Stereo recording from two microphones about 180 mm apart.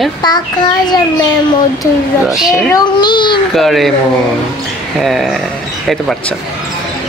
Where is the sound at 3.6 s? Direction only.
Centre (ahead or behind).